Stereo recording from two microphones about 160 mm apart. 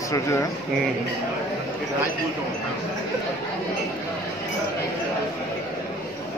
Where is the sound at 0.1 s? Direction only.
20° left (ahead or behind).